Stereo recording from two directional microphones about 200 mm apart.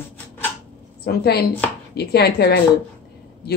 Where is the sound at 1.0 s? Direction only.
50° left (ahead or behind).